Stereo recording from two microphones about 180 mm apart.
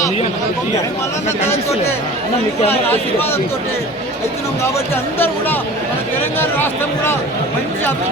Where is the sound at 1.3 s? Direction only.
15° left (ahead or behind).